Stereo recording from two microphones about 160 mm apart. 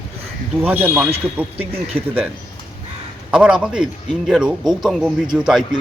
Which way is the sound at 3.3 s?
5° right (ahead or behind).